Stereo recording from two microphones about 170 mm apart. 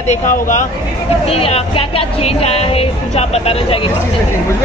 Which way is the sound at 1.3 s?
35° left (ahead or behind).